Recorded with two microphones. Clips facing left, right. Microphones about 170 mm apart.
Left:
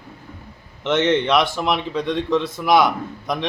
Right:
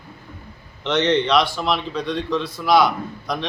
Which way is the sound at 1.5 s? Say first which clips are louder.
Left 1 dB; 20° left (ahead or behind).